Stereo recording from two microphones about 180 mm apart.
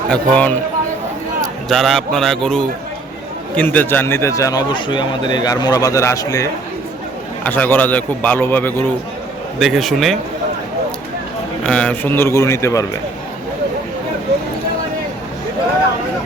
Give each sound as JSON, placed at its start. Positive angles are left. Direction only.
{"t": 0.1, "sound": "a man's voice", "side_deg": 10}
{"t": 1.7, "sound": "a man's voice", "side_deg": 0}
{"t": 9.6, "sound": "a man's voice", "side_deg": 0}
{"t": 11.6, "sound": "a man's voice", "side_deg": 5}